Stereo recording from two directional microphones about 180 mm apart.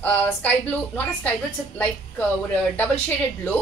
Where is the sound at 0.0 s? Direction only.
10° left (ahead or behind).